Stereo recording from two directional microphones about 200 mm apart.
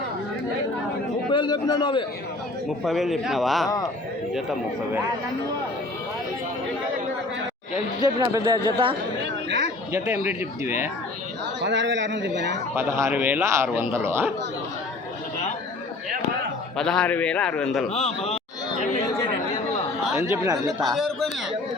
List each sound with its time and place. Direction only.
1.3 s a man's voice: 20° left (ahead or behind)
2.8 s a man's voice: centre (ahead or behind)
8.0 s speech: 20° right (ahead or behind)
9.5 s a sound: 65° right (ahead or behind)
10.2 s speech: 15° right (ahead or behind)
11.6 s a man's voice: 65° right (ahead or behind)
12.7 s speech: 10° right (ahead or behind)
16.7 s a man's voice: 5° left (ahead or behind)
17.8 s a man's voice: 30° left (ahead or behind)
19.0 s speech: 20° left (ahead or behind)
20.1 s speech: 10° right (ahead or behind)
20.9 s a man's voice: centre (ahead or behind)